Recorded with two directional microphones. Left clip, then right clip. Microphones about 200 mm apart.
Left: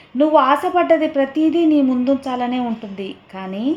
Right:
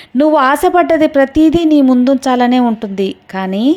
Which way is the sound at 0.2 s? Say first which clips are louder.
Right 4 dB; 35° right (ahead or behind).